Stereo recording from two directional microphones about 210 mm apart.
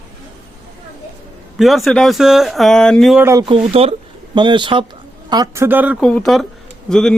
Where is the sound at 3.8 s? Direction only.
30° right (ahead or behind); by 6.0 s 10° right (ahead or behind).